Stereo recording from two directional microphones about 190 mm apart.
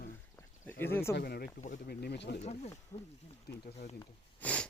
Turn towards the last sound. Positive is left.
turn(degrees=10)  # may be behind; listen again after turning